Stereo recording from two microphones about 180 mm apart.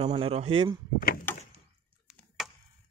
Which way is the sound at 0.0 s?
30° right (ahead or behind).